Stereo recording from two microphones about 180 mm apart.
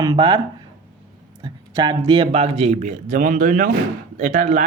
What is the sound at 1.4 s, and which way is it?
Speech, 25° right (ahead or behind).